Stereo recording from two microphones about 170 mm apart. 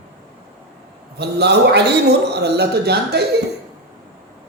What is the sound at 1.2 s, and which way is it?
A man's voice, 80° right.